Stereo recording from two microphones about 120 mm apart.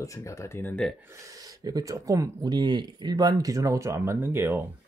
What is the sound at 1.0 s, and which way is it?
Speech, 30° right (ahead or behind).